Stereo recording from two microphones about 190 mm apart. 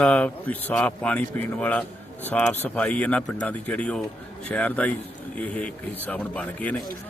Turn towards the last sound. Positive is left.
turn(degrees=5)  # may be behind; listen again after turning